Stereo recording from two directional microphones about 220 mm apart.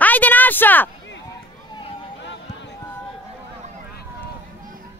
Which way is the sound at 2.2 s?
50° left (ahead or behind).